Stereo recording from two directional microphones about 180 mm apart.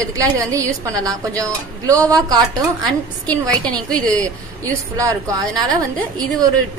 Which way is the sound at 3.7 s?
5° left (ahead or behind).